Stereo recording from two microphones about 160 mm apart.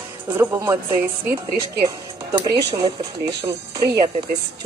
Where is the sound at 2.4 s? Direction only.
25° right (ahead or behind).